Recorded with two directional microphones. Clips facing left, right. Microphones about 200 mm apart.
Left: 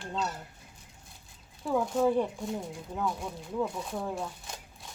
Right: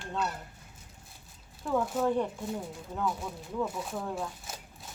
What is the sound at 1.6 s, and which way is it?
Speech, 10° left (ahead or behind).